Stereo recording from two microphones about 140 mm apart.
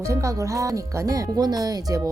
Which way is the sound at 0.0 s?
20° right (ahead or behind).